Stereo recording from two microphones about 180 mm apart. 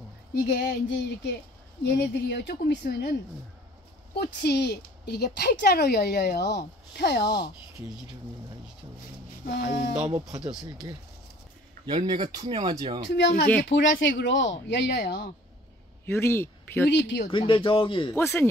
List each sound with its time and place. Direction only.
0.5 s speech: 70° left (ahead or behind)
4.1 s speech: 65° left (ahead or behind)
7.2 s speech: 25° left (ahead or behind)
10.0 s speech: 20° right (ahead or behind)
12.1 s speech: 25° right (ahead or behind)
13.0 s speech: 75° left (ahead or behind)
13.7 s speech: 90° left; by 15.2 s 70° left (ahead or behind)
16.1 s speech: 15° left (ahead or behind)
16.9 s speech: 75° left (ahead or behind)
17.3 s speech: 30° left (ahead or behind)
18.1 s speech: 10° left (ahead or behind)